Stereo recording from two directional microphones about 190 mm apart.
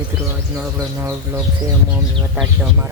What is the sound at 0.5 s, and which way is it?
Speech, 10° right (ahead or behind).